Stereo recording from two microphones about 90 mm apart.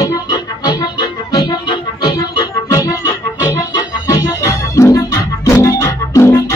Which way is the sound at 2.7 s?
35° left (ahead or behind).